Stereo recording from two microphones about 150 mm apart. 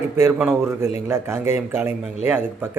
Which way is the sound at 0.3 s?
10° right (ahead or behind).